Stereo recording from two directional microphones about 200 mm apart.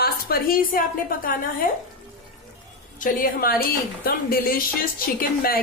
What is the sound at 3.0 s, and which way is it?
A woman's voice, 45° left (ahead or behind).